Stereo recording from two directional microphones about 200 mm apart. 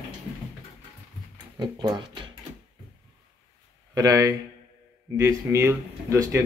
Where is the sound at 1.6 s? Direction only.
20° right (ahead or behind).